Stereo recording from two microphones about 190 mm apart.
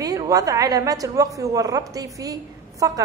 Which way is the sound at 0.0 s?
20° right (ahead or behind).